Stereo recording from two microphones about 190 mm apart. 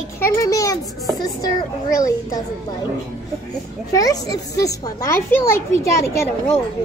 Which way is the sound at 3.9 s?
20° left (ahead or behind).